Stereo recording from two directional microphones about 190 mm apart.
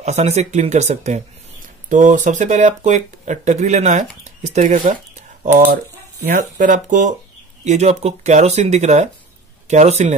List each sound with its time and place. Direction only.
0.0 s speech: 35° right (ahead or behind)
6.2 s speech: 45° right (ahead or behind)